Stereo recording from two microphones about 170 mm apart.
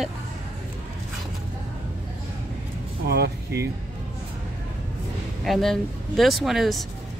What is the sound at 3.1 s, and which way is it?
Speech, 70° right (ahead or behind).